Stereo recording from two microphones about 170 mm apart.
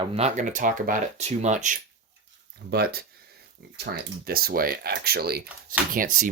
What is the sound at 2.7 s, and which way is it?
Speech, 65° right (ahead or behind).